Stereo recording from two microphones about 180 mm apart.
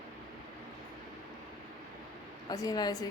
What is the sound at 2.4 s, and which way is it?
Speech, 20° left (ahead or behind).